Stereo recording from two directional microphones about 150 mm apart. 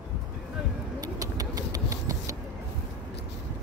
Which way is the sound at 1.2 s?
25° right (ahead or behind).